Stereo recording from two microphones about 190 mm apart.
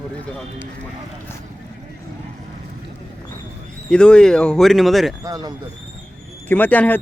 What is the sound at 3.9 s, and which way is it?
Speech, 5° left (ahead or behind).